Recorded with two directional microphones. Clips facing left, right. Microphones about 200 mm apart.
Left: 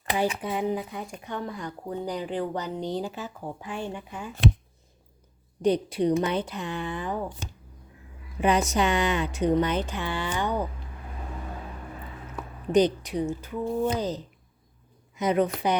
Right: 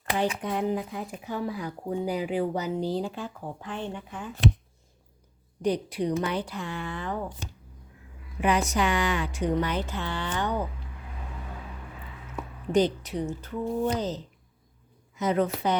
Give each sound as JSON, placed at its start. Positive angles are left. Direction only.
{"t": 0.0, "sound": "speech", "side_deg": 5}
{"t": 5.6, "sound": "speech", "side_deg": 25}
{"t": 8.4, "sound": "speech", "side_deg": 25}
{"t": 12.7, "sound": "a woman's voice", "side_deg": 15}